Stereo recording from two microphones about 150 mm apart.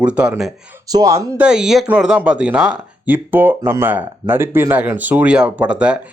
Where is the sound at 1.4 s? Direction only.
5° right (ahead or behind).